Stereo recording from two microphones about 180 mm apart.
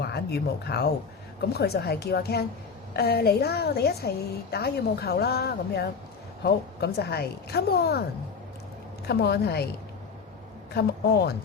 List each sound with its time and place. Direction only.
0.0 s speech: 65° left (ahead or behind)
9.0 s speech: 65° left (ahead or behind)
10.8 s a woman's voice: 65° left (ahead or behind)